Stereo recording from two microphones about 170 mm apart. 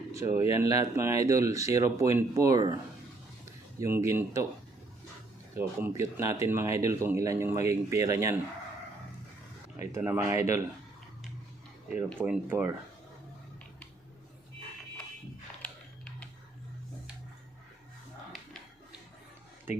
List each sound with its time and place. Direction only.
0.1 s speech: 15° right (ahead or behind)
5.5 s speech: 15° right (ahead or behind)
9.9 s speech: 10° right (ahead or behind)
12.2 s speech: 10° right (ahead or behind)